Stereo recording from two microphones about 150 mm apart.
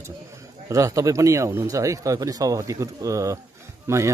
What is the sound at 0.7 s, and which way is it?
Speech, 20° right (ahead or behind).